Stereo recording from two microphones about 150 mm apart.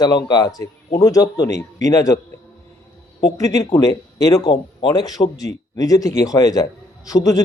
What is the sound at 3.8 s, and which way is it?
Speech, 25° left (ahead or behind).